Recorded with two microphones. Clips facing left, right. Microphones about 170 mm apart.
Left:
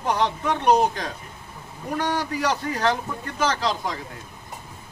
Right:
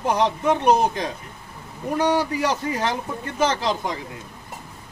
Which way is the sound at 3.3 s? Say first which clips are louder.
Right 3 dB; 25° right (ahead or behind).